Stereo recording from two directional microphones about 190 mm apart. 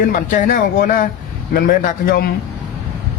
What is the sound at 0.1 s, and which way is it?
Speech, 45° left (ahead or behind).